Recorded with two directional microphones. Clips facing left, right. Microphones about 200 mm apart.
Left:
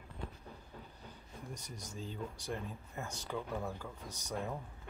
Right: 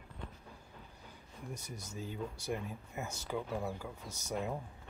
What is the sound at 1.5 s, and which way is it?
Speech, 10° right (ahead or behind).